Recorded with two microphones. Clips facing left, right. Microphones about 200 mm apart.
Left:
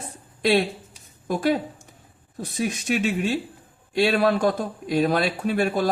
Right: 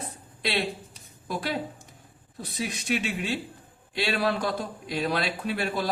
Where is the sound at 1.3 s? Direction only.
45° left (ahead or behind).